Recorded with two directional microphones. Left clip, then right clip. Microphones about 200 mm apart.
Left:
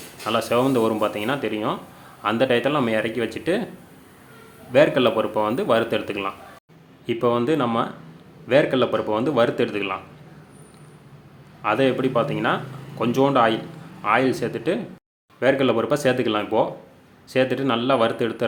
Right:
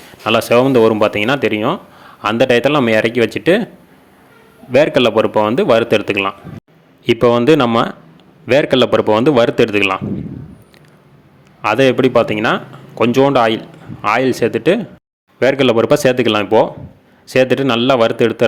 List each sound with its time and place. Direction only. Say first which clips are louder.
0.3 s a man's voice: right 9 dB; 35° right (ahead or behind)
4.7 s a man's voice: right 6 dB; 40° right (ahead or behind)
11.6 s a man's voice: right 8 dB; 40° right (ahead or behind)